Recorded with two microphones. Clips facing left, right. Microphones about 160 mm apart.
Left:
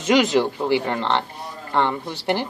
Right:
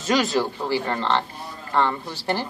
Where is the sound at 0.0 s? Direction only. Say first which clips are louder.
Left 4 dB; 20° left (ahead or behind).